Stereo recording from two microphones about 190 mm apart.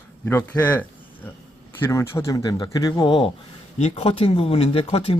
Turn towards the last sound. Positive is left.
turn(degrees=30)  # may be behind; listen again after turning